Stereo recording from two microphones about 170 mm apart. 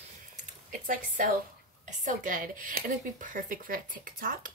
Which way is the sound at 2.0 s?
50° right (ahead or behind).